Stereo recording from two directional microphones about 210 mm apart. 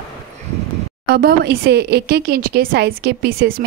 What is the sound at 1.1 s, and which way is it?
A woman's voice, 50° right (ahead or behind).